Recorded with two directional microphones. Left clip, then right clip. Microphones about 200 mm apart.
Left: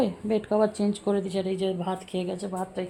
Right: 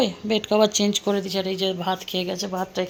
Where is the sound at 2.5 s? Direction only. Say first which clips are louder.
Right 6 dB; 20° right (ahead or behind).